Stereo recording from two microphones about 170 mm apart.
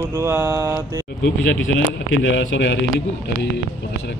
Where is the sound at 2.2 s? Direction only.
90° left.